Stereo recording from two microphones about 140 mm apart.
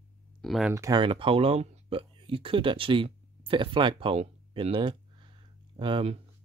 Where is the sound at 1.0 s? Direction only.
40° right (ahead or behind).